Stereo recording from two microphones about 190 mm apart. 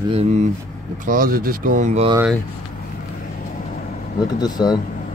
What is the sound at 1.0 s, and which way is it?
Speech, 45° right (ahead or behind).